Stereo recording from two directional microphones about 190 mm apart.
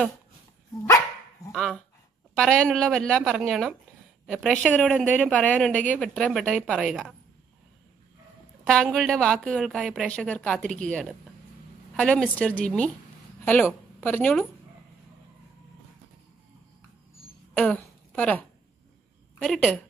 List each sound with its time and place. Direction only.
0.8 s dog: 20° left (ahead or behind)
1.5 s speech: centre (ahead or behind)
8.6 s a woman's voice: 5° left (ahead or behind)
14.0 s a woman's voice: 10° left (ahead or behind)
17.6 s a woman's voice: 10° left (ahead or behind)